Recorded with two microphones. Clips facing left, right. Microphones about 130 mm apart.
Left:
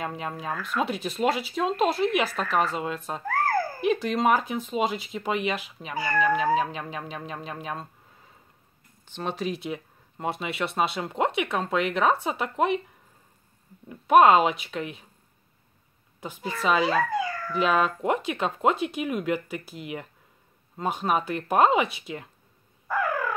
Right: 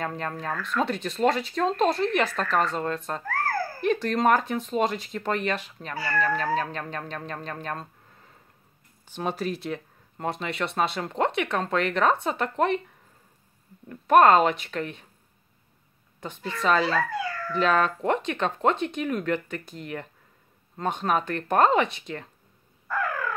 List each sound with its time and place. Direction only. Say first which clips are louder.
0.0 s speech: right 1 dB; 5° left (ahead or behind)
3.3 s a sound: left 4 dB; 15° left (ahead or behind)
3.8 s speech: right 2 dB; 5° left (ahead or behind)
9.0 s speech: right 1 dB; 10° right (ahead or behind)
13.8 s speech: even; 5° left (ahead or behind)
16.2 s speech: even; 5° left (ahead or behind)
22.8 s bird: left 2 dB; 10° left (ahead or behind)